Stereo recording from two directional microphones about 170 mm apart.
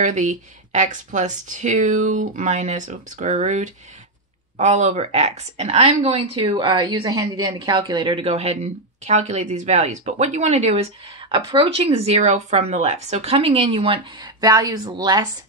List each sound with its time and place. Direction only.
0.0 s speech: 45° right (ahead or behind); by 15.2 s 25° right (ahead or behind)